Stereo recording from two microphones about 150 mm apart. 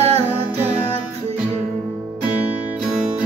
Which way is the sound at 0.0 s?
40° right (ahead or behind).